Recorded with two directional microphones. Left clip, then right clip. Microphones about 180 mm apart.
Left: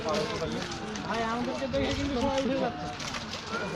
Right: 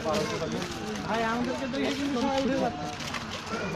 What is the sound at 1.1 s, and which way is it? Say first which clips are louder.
Speech: right 2 dB; 45° right (ahead or behind).